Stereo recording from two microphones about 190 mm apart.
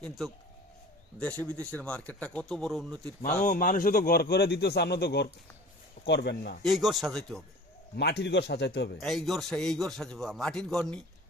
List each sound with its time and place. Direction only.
1.2 s speech: 10° left (ahead or behind)
3.4 s speech: 45° left (ahead or behind)
6.6 s a man's voice: centre (ahead or behind)
7.9 s speech: 65° left (ahead or behind)
9.0 s a man's voice: centre (ahead or behind)